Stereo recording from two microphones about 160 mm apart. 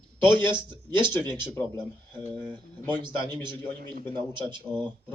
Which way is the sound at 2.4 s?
10° left (ahead or behind).